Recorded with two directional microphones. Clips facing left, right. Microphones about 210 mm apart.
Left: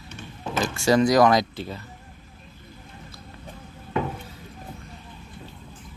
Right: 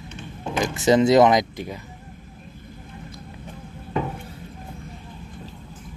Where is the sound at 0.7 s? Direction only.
20° right (ahead or behind).